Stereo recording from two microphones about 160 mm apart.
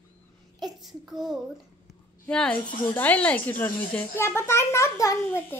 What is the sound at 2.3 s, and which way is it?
Speech, 5° left (ahead or behind).